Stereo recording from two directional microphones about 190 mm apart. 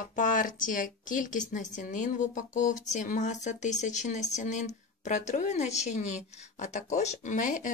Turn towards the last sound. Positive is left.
turn(degrees=45)  # may be behind; listen again after turning